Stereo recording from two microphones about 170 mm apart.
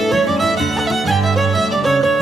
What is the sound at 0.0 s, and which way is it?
Music, centre (ahead or behind).